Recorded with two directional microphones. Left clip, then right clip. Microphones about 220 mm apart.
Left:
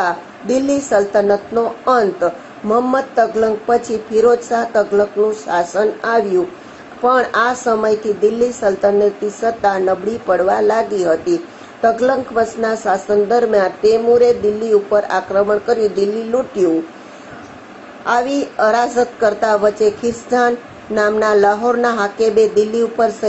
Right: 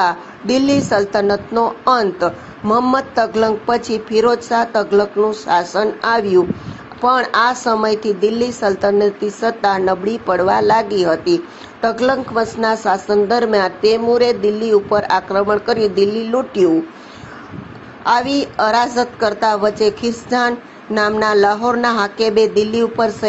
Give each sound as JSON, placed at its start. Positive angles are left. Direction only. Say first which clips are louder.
{"t": 0.0, "sound": "a woman's voice", "louder": "right 2 dB", "side_deg": -45}
{"t": 18.0, "sound": "a woman's voice", "louder": "right 1 dB", "side_deg": -45}